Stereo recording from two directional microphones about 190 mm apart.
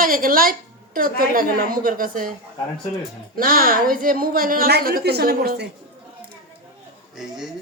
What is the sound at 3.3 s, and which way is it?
A woman's voice, 50° right (ahead or behind).